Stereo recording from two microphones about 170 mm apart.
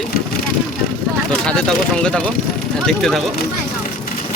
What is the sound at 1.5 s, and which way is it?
Speech, 5° left (ahead or behind).